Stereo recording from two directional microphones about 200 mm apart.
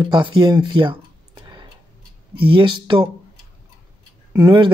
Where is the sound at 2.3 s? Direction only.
25° right (ahead or behind).